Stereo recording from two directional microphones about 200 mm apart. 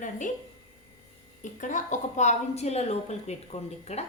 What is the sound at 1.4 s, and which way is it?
A woman's voice, 40° left (ahead or behind).